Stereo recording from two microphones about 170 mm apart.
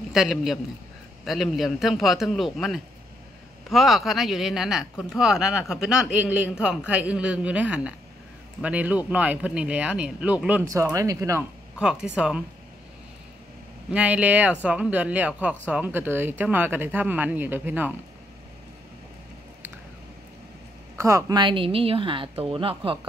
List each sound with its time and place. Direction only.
0.1 s speech: centre (ahead or behind); by 11.4 s 20° right (ahead or behind)
11.8 s speech: 5° right (ahead or behind)
13.9 s speech: 10° right (ahead or behind)
21.0 s a woman's voice: 15° right (ahead or behind)